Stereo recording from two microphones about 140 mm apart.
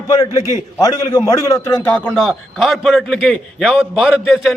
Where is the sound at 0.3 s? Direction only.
25° left (ahead or behind).